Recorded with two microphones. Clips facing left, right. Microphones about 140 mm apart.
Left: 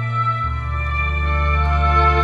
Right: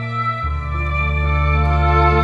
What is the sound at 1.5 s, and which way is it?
Music, 35° right (ahead or behind).